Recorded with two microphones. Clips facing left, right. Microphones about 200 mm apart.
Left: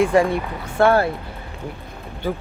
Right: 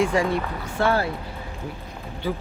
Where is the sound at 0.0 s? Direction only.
55° left (ahead or behind).